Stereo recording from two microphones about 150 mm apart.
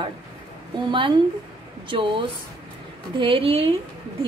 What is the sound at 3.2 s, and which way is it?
Speech, 35° right (ahead or behind).